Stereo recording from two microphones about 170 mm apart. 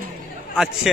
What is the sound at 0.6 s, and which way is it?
Speech, 5° right (ahead or behind).